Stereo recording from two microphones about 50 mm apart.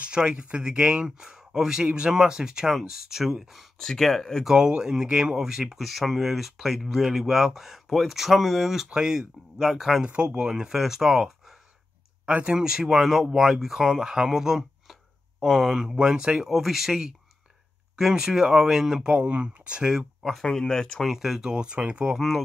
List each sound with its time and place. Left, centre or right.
0.0 s speech: centre
3.8 s speech: centre
4.5 s speech: centre
9.6 s speech: centre
10.0 s speech: centre
12.3 s speech: centre
19.0 s speech: right
20.2 s a sound: centre
20.4 s speech: centre
21.0 s speech: centre; by 22.0 s right